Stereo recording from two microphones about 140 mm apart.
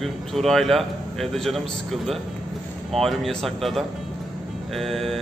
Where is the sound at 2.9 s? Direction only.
Centre (ahead or behind).